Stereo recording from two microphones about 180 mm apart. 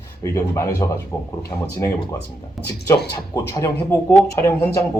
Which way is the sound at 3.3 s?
20° left (ahead or behind).